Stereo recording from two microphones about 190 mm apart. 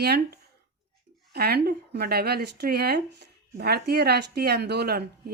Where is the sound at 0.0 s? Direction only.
60° right (ahead or behind).